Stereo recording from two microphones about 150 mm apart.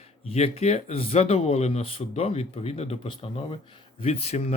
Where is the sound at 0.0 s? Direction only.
45° left (ahead or behind).